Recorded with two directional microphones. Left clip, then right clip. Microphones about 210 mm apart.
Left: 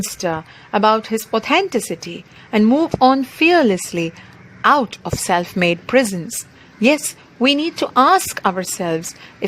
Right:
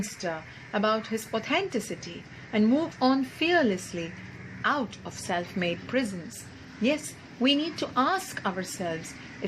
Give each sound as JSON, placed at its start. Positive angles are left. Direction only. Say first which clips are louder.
{"t": 0.2, "sound": "a woman's voice", "louder": "left 13 dB", "side_deg": 50}
{"t": 7.4, "sound": "a woman's voice", "louder": "left 9 dB", "side_deg": 50}